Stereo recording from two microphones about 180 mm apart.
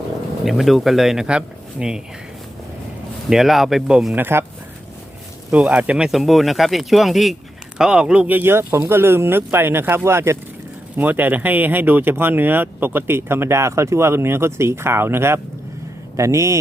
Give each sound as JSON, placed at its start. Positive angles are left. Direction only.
{"t": 0.4, "sound": "speech", "side_deg": 0}
{"t": 3.2, "sound": "speech", "side_deg": 0}
{"t": 5.5, "sound": "speech", "side_deg": -5}